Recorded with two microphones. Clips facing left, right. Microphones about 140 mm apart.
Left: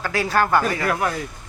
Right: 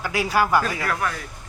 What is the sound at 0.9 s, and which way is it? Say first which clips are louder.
Speech: left 3 dB; 25° left (ahead or behind).